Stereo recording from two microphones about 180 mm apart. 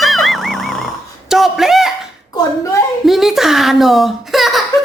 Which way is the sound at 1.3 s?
Centre (ahead or behind).